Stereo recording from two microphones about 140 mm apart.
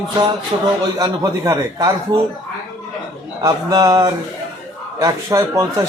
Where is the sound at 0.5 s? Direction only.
25° right (ahead or behind).